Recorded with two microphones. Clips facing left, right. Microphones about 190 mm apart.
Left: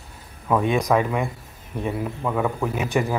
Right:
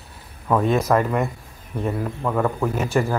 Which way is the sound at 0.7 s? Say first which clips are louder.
Right 2 dB; centre (ahead or behind).